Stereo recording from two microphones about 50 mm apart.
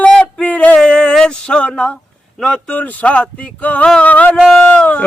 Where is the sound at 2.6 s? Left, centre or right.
Left.